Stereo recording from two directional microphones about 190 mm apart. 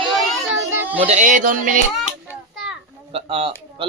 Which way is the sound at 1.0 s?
40° right (ahead or behind).